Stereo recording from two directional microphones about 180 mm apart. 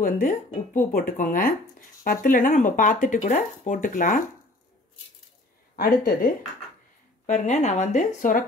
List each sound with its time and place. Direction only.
0.0 s speech: 50° left (ahead or behind)
5.8 s speech: 50° left (ahead or behind)